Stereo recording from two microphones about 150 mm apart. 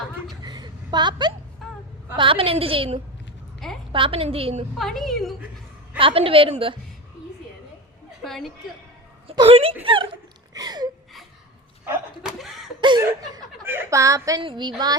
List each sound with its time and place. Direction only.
0.4 s a sound: 30° right (ahead or behind)
2.1 s a woman's voice: 35° right (ahead or behind)
4.8 s a woman's voice: centre (ahead or behind)
6.0 s a woman's voice: 35° right (ahead or behind)
8.2 s a woman's voice: centre (ahead or behind)
9.2 s speech: 35° right (ahead or behind)
9.8 s a sound: 35° right (ahead or behind)
12.2 s snicker: centre (ahead or behind)
12.8 s chuckle: 30° right (ahead or behind)
13.7 s a woman's voice: 20° right (ahead or behind)
14.4 s a woman's voice: 30° right (ahead or behind)